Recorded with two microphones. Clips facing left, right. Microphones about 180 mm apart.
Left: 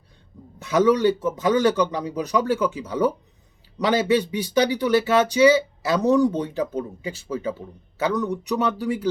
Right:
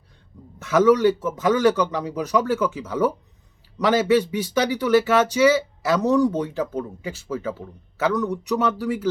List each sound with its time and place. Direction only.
0.6 s speech: 15° left (ahead or behind)